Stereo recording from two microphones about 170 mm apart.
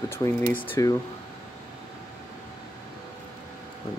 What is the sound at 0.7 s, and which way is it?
Speech, 15° left (ahead or behind).